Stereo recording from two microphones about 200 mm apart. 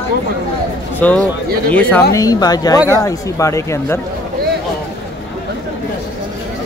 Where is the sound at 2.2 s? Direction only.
20° left (ahead or behind).